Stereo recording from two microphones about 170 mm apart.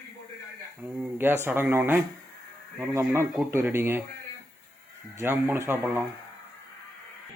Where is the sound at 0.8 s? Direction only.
10° right (ahead or behind).